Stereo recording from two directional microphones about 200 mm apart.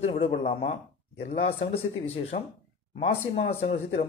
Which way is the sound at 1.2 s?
50° left (ahead or behind).